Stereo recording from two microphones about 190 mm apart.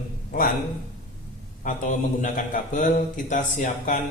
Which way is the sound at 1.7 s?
40° left (ahead or behind).